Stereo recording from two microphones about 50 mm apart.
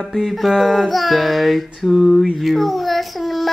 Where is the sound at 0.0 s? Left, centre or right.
Centre.